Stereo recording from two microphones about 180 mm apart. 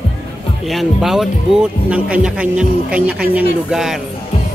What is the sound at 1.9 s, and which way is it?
A man's voice, 5° right (ahead or behind).